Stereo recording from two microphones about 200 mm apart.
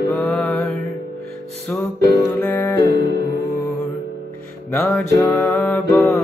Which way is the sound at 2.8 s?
55° right (ahead or behind).